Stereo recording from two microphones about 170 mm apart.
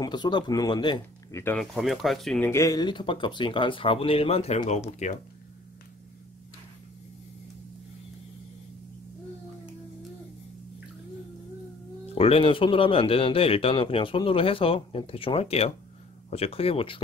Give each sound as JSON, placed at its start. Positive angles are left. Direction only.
{"t": 0.0, "sound": "speech", "side_deg": 25}
{"t": 1.6, "sound": "speech", "side_deg": 0}
{"t": 2.4, "sound": "speech", "side_deg": 15}
{"t": 12.1, "sound": "speech", "side_deg": 35}